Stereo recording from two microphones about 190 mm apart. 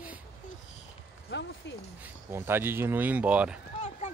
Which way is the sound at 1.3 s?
70° left (ahead or behind).